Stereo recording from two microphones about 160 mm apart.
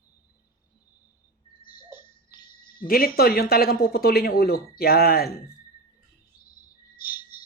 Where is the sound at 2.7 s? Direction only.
65° left (ahead or behind).